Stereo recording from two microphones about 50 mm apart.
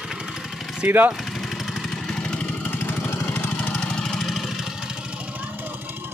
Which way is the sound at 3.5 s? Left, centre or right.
Left.